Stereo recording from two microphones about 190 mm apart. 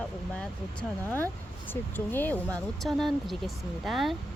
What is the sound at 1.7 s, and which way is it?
Speech, 10° left (ahead or behind).